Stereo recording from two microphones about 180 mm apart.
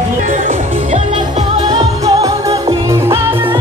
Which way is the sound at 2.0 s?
20° right (ahead or behind).